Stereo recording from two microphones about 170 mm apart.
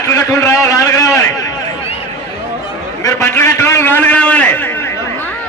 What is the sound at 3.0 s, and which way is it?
A man's voice, 15° left (ahead or behind).